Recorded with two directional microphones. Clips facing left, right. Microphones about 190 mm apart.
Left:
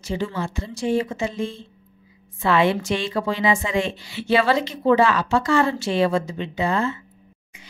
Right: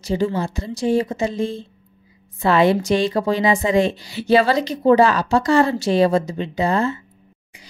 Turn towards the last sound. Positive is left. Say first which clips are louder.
# right 3 dB
turn(degrees=-40)  # may be behind; listen again after turning